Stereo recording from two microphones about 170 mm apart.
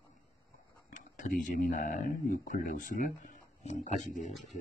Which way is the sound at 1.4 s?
50° left (ahead or behind).